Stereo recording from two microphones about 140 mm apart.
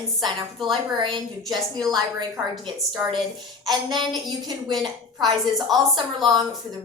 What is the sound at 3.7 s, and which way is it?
A woman's voice, 30° right (ahead or behind).